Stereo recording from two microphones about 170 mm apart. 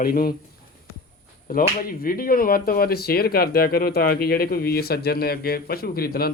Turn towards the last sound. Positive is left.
turn(degrees=65)  # may be behind; listen again after turning